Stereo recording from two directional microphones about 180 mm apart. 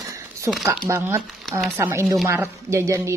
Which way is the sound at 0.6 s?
15° right (ahead or behind).